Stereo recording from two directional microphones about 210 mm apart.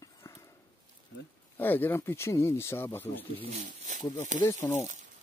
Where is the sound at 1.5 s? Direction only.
10° left (ahead or behind).